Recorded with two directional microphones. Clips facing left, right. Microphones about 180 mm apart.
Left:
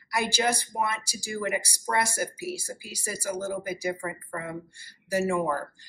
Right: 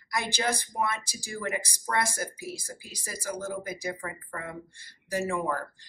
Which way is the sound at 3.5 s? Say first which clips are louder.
Left 4 dB; 10° left (ahead or behind).